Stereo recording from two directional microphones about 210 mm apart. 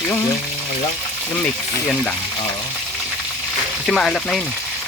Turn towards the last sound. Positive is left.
turn(degrees=5)  # may be behind; listen again after turning